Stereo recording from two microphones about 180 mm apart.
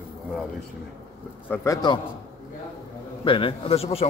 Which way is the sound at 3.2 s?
30° left (ahead or behind).